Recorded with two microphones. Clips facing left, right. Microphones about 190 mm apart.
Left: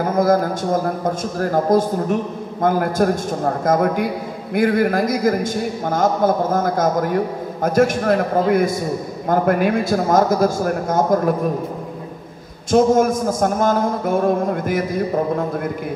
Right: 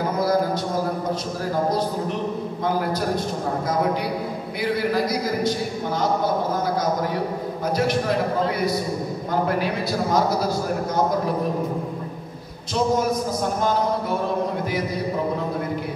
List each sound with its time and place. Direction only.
0.1 s a man's voice: 50° left (ahead or behind)
12.7 s a man's voice: 50° left (ahead or behind)